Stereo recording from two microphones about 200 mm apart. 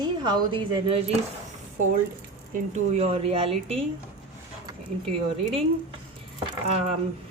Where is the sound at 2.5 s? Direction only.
35° right (ahead or behind).